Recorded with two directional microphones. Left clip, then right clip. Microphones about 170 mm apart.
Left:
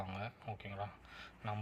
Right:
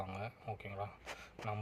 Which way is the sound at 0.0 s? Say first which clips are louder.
Right 1 dB; centre (ahead or behind).